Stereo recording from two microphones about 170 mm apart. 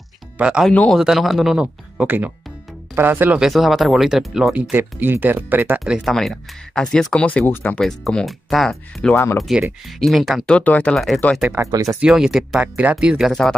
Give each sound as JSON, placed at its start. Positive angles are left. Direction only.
{"t": 0.4, "sound": "speech", "side_deg": -5}
{"t": 11.4, "sound": "speech", "side_deg": -15}
{"t": 12.0, "sound": "speech", "side_deg": -5}